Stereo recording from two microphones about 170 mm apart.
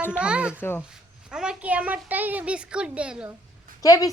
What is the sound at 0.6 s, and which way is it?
Speech, 10° left (ahead or behind).